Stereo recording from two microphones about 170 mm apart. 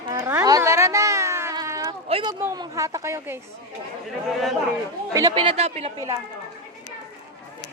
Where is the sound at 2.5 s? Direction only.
20° right (ahead or behind).